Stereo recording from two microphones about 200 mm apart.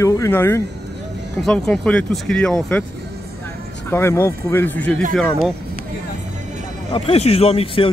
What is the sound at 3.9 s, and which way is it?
Speech, 10° left (ahead or behind).